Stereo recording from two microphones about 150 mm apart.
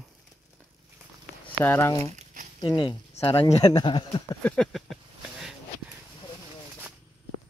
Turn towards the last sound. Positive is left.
turn(degrees=0)  # may be behind; listen again after turning